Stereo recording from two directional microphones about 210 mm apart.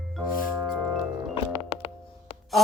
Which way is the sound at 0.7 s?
15° right (ahead or behind).